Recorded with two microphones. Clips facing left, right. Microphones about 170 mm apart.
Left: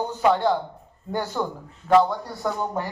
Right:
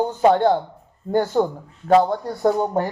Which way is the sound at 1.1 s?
50° right (ahead or behind).